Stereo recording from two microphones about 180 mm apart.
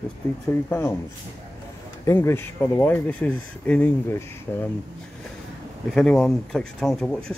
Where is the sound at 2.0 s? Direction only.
15° left (ahead or behind).